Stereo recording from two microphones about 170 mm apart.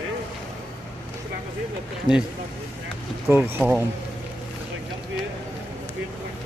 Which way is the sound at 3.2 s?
10° right (ahead or behind).